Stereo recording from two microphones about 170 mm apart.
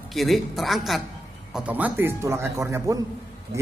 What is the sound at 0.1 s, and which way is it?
Speech, centre (ahead or behind).